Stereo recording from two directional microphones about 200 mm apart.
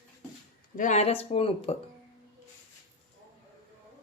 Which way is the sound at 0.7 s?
40° left (ahead or behind).